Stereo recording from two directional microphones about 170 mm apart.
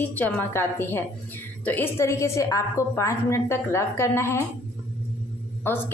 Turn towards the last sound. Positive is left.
turn(degrees=10)  # may be behind; listen again after turning